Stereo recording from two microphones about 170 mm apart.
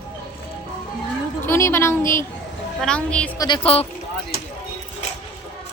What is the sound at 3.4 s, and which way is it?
Speech, 30° left (ahead or behind).